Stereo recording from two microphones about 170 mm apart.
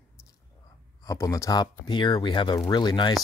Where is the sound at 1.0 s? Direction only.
20° left (ahead or behind).